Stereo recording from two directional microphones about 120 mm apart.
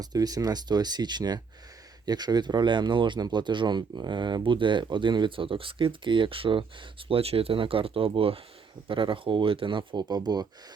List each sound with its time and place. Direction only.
0.0 s speech: 30° right (ahead or behind)